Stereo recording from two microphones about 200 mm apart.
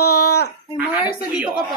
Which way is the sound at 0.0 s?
90° left.